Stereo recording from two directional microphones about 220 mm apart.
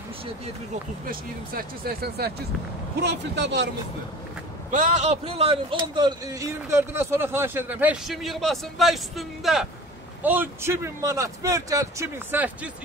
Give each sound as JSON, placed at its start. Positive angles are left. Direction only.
{"t": 1.0, "sound": "speech", "side_deg": -40}
{"t": 4.6, "sound": "a man's voice", "side_deg": -35}